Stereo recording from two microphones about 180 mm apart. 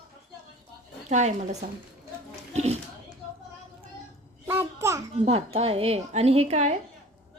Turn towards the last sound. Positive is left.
turn(degrees=-35)  # may be behind; listen again after turning